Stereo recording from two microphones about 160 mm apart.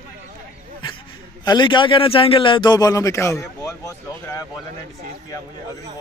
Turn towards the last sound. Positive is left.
turn(degrees=20)  # may be behind; listen again after turning